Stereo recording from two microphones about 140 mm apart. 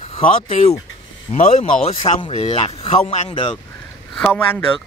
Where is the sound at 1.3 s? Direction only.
50° left (ahead or behind).